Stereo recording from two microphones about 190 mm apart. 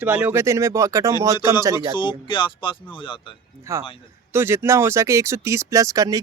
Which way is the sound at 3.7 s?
15° right (ahead or behind).